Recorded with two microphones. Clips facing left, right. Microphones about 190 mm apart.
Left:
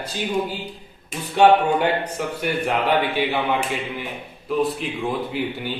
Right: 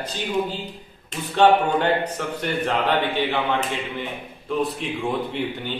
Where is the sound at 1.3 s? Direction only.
10° left (ahead or behind).